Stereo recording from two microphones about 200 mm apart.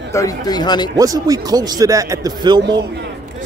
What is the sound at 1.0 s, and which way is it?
Speech, 20° right (ahead or behind).